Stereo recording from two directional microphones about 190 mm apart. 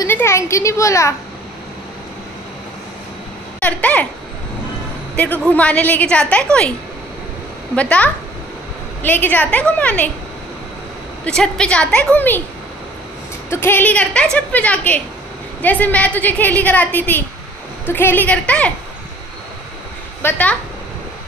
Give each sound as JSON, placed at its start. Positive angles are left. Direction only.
{"t": 0.0, "sound": "a woman's voice", "side_deg": 15}
{"t": 3.5, "sound": "a sound", "side_deg": 5}
{"t": 5.1, "sound": "a woman's voice", "side_deg": 10}
{"t": 7.7, "sound": "a woman's voice", "side_deg": 5}
{"t": 11.2, "sound": "a woman's voice", "side_deg": 5}
{"t": 13.5, "sound": "a woman's voice", "side_deg": 10}
{"t": 20.2, "sound": "speech", "side_deg": 10}